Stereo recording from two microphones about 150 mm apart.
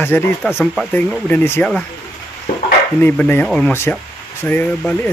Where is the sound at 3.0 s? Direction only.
10° left (ahead or behind).